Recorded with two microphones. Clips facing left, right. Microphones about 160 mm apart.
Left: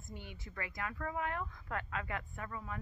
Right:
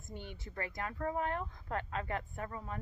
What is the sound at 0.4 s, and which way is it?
Speech, 35° right (ahead or behind).